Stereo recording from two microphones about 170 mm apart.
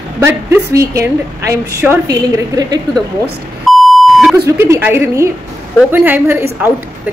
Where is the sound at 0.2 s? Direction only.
15° right (ahead or behind).